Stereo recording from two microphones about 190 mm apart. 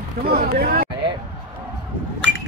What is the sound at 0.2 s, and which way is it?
Speech, 50° right (ahead or behind).